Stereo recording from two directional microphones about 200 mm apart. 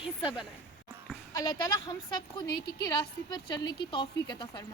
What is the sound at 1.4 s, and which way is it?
A woman's voice, 20° left (ahead or behind).